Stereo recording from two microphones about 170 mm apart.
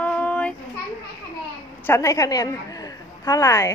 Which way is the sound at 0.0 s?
10° left (ahead or behind).